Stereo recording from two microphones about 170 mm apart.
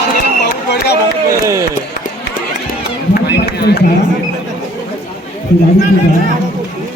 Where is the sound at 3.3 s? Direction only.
75° left (ahead or behind).